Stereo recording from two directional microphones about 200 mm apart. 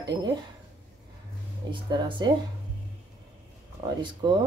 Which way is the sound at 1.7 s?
25° right (ahead or behind).